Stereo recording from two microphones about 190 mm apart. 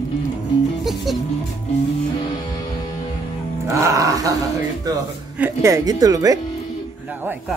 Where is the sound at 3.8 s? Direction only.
15° right (ahead or behind).